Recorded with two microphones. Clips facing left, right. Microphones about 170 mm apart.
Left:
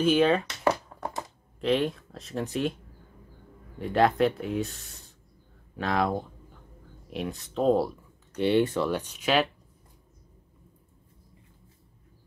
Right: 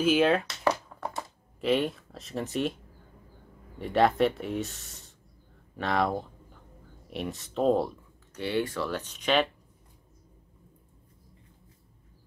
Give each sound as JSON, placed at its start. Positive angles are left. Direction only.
{"t": 0.0, "sound": "speech", "side_deg": -5}
{"t": 0.7, "sound": "a sound", "side_deg": 15}
{"t": 1.6, "sound": "speech", "side_deg": 0}
{"t": 8.4, "sound": "speech", "side_deg": 20}